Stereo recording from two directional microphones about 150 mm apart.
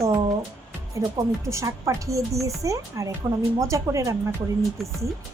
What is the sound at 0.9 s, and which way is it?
A woman's voice, 20° right (ahead or behind).